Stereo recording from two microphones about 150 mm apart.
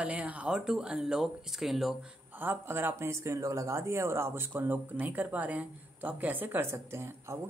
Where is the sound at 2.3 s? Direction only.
15° right (ahead or behind).